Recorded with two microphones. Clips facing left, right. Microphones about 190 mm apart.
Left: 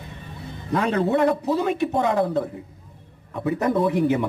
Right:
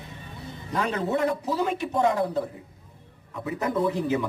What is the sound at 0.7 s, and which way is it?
Speech, 65° left (ahead or behind).